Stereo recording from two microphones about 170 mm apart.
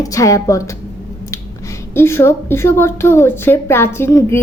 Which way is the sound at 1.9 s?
15° left (ahead or behind).